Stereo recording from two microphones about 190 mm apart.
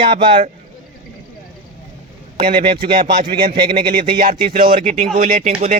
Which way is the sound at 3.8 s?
50° right (ahead or behind).